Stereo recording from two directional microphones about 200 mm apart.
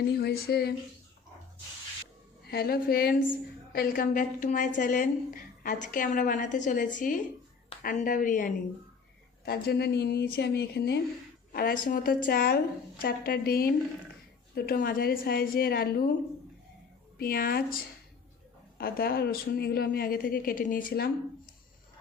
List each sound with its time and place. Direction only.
0.2 s speech: 50° left (ahead or behind)
2.5 s a woman's voice: 50° left (ahead or behind)
9.5 s speech: 50° left (ahead or behind)
11.5 s speech: 45° left (ahead or behind)
17.2 s speech: 50° left (ahead or behind)
18.8 s speech: 50° left (ahead or behind)